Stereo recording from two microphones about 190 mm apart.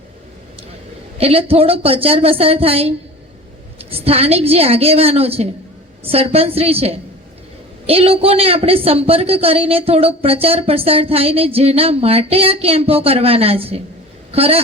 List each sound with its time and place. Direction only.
1.2 s a man's voice: 30° right (ahead or behind)